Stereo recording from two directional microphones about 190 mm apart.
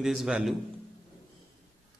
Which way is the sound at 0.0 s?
Centre (ahead or behind).